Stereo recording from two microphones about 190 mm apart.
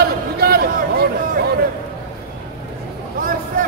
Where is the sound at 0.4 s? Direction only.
55° right (ahead or behind).